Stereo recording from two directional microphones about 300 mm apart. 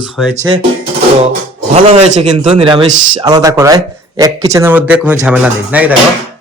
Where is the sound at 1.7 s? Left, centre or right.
Right; by 5.9 s centre.